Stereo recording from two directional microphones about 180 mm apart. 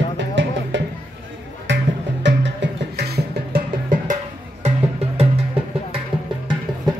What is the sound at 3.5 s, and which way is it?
Music, 55° right (ahead or behind).